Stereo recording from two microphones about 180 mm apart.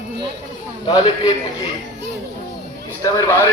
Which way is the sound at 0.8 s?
25° left (ahead or behind).